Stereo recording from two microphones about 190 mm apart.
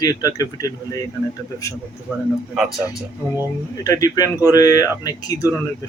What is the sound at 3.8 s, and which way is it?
Speech, 20° left (ahead or behind).